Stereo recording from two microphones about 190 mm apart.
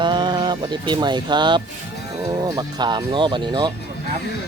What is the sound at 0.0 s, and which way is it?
Speech, 25° right (ahead or behind).